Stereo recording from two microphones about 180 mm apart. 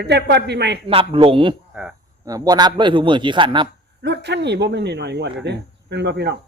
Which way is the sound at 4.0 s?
70° right (ahead or behind).